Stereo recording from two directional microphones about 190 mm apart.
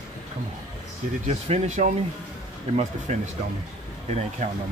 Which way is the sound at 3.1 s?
40° right (ahead or behind).